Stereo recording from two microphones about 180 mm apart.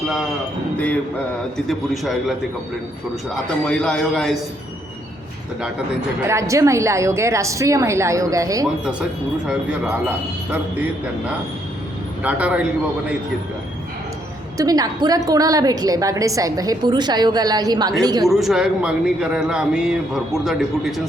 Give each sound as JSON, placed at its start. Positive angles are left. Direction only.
{"t": 1.6, "sound": "a man's voice", "side_deg": 0}
{"t": 3.6, "sound": "a man's voice", "side_deg": 5}
{"t": 6.2, "sound": "a woman's voice", "side_deg": -15}
{"t": 12.2, "sound": "a woman's voice", "side_deg": -5}
{"t": 14.6, "sound": "a woman's voice", "side_deg": -20}
{"t": 18.3, "sound": "a man's voice", "side_deg": 0}